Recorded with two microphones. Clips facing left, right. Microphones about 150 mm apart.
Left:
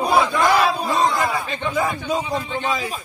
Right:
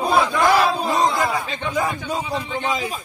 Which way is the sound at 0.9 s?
15° right (ahead or behind).